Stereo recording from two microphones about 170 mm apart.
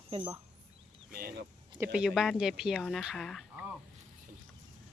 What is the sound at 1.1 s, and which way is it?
Speech, 60° right (ahead or behind).